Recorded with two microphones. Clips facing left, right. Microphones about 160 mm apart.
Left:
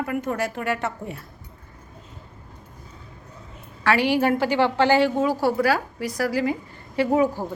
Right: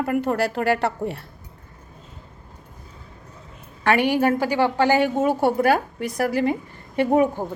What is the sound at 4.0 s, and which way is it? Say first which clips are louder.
A woman's voice: even; 45° right (ahead or behind).